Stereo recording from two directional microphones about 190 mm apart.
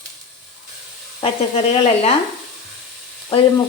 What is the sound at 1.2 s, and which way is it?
Speech, 30° left (ahead or behind).